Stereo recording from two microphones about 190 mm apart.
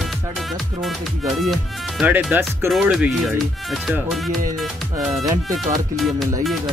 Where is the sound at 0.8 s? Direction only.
Centre (ahead or behind).